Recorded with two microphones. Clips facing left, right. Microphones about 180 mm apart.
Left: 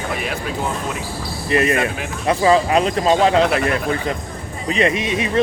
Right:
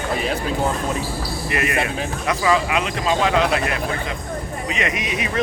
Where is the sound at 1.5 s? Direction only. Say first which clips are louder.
Left 5 dB; 30° left (ahead or behind).